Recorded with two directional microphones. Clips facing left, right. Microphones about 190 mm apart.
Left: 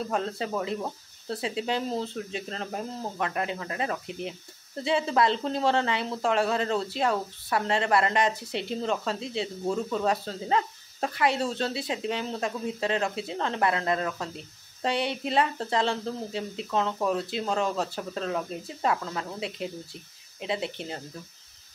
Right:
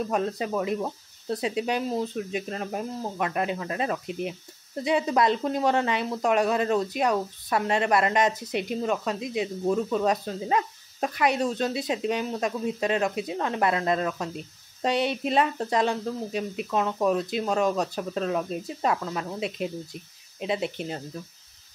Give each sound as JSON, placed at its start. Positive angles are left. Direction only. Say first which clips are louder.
{"t": 0.1, "sound": "speech", "louder": "right 3 dB", "side_deg": -15}